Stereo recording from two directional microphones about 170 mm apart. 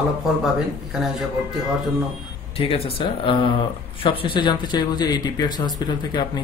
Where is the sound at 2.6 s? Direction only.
35° left (ahead or behind).